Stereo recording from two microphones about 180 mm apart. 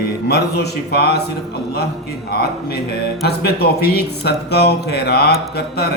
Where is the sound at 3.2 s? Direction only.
60° left (ahead or behind).